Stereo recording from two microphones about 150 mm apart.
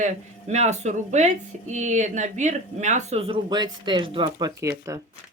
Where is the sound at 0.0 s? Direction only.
50° right (ahead or behind); by 4.9 s 25° right (ahead or behind).